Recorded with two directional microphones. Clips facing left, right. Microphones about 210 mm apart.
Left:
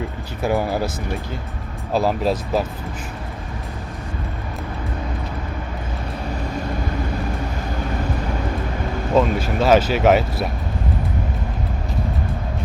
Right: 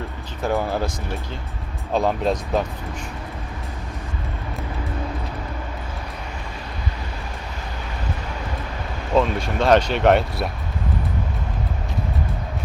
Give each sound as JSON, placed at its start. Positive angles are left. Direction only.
{"t": 0.4, "sound": "speech", "side_deg": 10}
{"t": 1.9, "sound": "speech", "side_deg": 5}
{"t": 9.1, "sound": "speech", "side_deg": 5}